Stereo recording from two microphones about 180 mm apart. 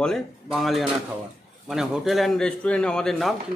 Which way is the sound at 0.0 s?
Centre (ahead or behind).